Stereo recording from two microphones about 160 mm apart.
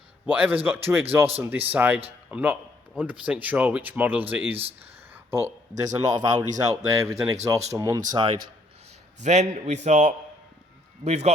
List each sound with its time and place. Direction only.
0.3 s a man's voice: 10° right (ahead or behind); by 8.4 s 30° right (ahead or behind)
9.2 s a man's voice: 45° right (ahead or behind)